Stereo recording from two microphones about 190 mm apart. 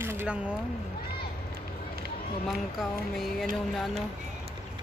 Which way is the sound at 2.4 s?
Centre (ahead or behind).